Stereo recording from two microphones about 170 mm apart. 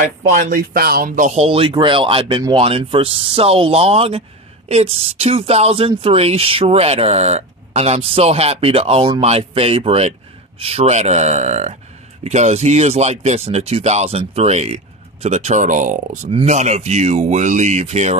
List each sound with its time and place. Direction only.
0.0 s speech: 50° right (ahead or behind)
16.3 s speech: 35° right (ahead or behind)